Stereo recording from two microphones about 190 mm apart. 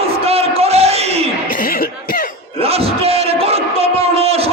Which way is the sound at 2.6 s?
30° right (ahead or behind).